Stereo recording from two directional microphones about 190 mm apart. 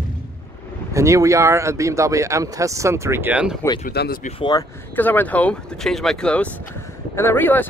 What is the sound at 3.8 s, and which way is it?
Speech, 55° left (ahead or behind).